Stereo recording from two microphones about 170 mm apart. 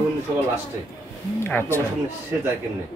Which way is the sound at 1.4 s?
15° left (ahead or behind).